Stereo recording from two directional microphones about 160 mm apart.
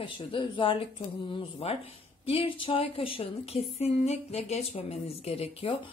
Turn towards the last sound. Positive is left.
turn(degrees=35)  # may be behind; listen again after turning